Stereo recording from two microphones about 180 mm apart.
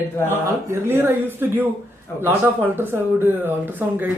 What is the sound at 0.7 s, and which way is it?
Speech, 10° right (ahead or behind).